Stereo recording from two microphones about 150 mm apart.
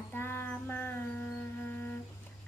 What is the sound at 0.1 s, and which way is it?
Mantra, 15° left (ahead or behind).